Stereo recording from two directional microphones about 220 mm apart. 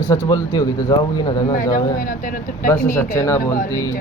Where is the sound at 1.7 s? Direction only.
40° left (ahead or behind).